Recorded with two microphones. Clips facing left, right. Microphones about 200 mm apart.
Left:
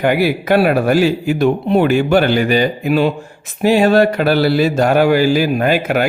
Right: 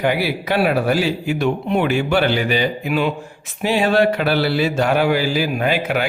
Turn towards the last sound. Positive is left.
turn(degrees=45)  # may be behind; listen again after turning